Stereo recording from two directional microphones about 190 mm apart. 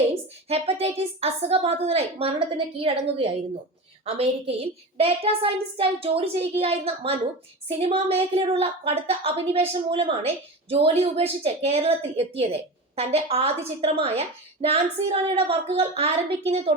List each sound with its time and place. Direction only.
0.1 s a woman's voice: 30° right (ahead or behind)